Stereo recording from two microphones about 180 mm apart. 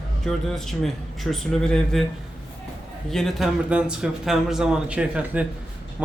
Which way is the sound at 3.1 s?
Centre (ahead or behind).